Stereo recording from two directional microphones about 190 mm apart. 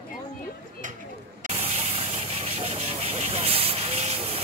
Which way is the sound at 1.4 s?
35° right (ahead or behind).